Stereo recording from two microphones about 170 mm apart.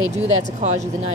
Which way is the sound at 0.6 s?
45° right (ahead or behind).